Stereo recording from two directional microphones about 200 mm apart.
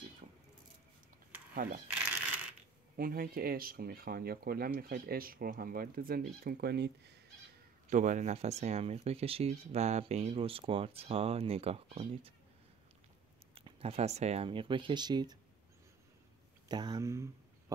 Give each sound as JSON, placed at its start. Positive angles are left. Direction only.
{"t": 3.0, "sound": "speech", "side_deg": -45}
{"t": 7.9, "sound": "speech", "side_deg": -40}
{"t": 13.6, "sound": "speech", "side_deg": -30}
{"t": 16.6, "sound": "speech", "side_deg": -20}